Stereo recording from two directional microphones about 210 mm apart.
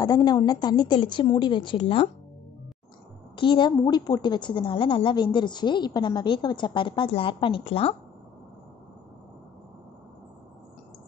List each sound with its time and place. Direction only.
0.0 s a woman's voice: 20° left (ahead or behind)
3.3 s a woman's voice: 25° left (ahead or behind)